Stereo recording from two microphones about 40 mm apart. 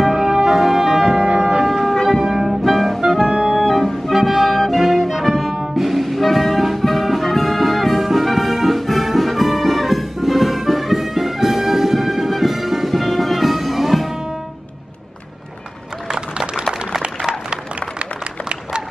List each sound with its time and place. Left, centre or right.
0.0 s music: centre
3.0 s music: centre
3.3 s music: right
3.5 s music: centre
4.1 s music: centre
16.1 s a sound: right